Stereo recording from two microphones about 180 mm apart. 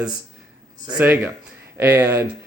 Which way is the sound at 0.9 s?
10° right (ahead or behind).